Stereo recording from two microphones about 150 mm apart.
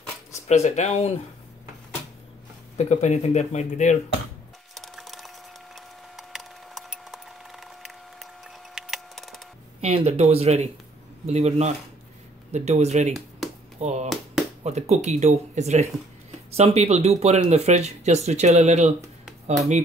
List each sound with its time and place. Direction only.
0.5 s speech: 50° left (ahead or behind)
2.8 s speech: 50° left (ahead or behind)
4.7 s wood: centre (ahead or behind)
6.1 s a sound: centre (ahead or behind)
9.8 s speech: 45° right (ahead or behind)